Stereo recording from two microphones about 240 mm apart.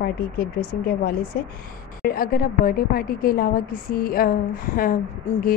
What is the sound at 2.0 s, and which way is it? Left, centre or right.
A woman's voice, left.